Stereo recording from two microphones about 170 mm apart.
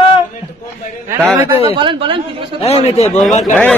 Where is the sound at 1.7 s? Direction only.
30° right (ahead or behind).